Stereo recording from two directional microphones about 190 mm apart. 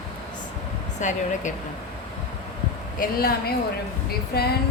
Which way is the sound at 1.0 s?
40° left (ahead or behind).